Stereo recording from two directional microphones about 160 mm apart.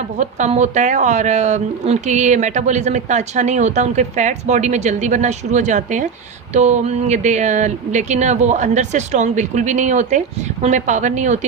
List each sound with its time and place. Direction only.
0.2 s a woman's voice: 50° right (ahead or behind)